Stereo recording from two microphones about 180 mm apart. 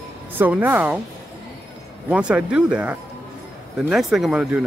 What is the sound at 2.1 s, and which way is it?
Speech, 5° right (ahead or behind).